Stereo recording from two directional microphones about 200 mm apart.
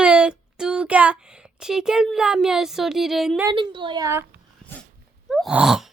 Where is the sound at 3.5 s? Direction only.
20° right (ahead or behind).